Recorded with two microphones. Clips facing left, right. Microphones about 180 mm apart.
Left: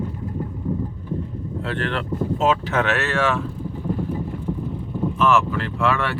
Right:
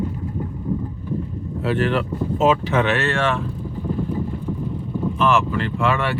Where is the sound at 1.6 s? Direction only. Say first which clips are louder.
Right 6 dB; 5° right (ahead or behind).